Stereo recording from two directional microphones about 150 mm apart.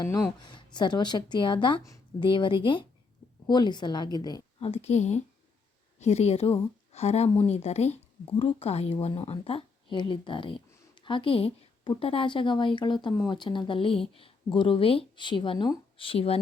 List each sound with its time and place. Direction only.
0.0 s a woman's voice: 25° left (ahead or behind)
4.6 s a woman's voice: 45° left (ahead or behind)